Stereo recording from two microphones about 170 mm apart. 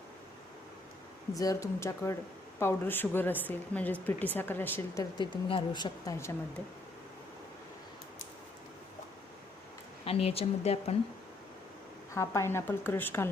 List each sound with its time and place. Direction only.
1.3 s a woman's voice: 20° left (ahead or behind)
5.1 s a woman's voice: 25° left (ahead or behind)
10.1 s speech: 35° left (ahead or behind)
12.1 s a woman's voice: 15° left (ahead or behind)